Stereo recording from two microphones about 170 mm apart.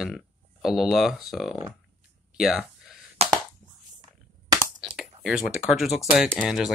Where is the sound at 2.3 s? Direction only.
Centre (ahead or behind).